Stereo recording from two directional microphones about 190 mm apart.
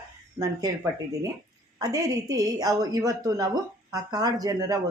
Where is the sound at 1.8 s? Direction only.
20° right (ahead or behind).